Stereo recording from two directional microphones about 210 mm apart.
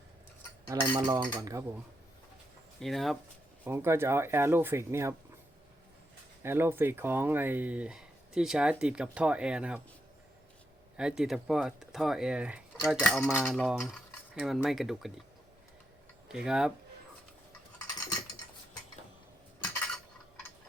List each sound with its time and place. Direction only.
0.7 s cutlery: 20° right (ahead or behind)
1.3 s speech: 15° right (ahead or behind)
2.8 s cutlery: centre (ahead or behind)
3.6 s speech: 10° right (ahead or behind)
6.4 s speech: 10° right (ahead or behind)
8.8 s cutlery: 5° right (ahead or behind)
10.9 s cutlery: 5° right (ahead or behind)
13.0 s cutlery: 5° left (ahead or behind)
16.3 s cutlery: 5° right (ahead or behind)